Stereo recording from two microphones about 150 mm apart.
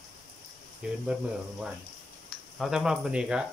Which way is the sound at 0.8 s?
5° right (ahead or behind).